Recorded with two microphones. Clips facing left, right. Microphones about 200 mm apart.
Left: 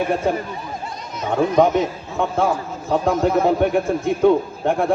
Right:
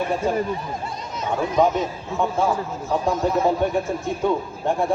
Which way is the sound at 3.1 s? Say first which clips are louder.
Left 3 dB; 55° left (ahead or behind).